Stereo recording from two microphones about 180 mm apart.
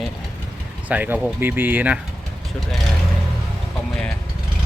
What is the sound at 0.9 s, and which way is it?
Speech, 10° right (ahead or behind).